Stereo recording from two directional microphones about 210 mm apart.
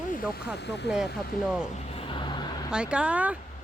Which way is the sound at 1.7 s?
30° left (ahead or behind).